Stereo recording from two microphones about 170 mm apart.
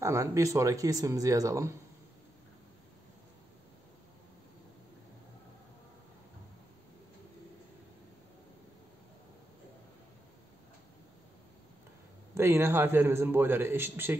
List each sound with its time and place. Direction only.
0.0 s speech: 20° right (ahead or behind)
12.4 s a man's voice: 15° right (ahead or behind)